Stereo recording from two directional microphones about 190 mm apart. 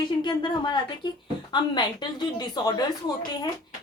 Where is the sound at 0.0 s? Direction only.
25° left (ahead or behind).